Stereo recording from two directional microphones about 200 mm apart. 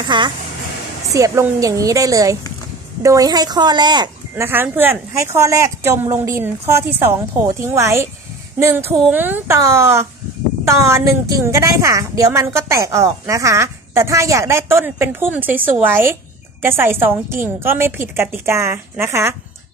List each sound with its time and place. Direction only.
0.0 s a woman's voice: 25° right (ahead or behind)
4.5 s a woman's voice: 10° right (ahead or behind)